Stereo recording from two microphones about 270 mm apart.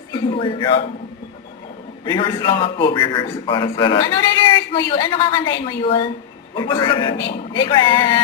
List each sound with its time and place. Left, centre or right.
0.1 s a man's voice: centre
2.0 s a man's voice: centre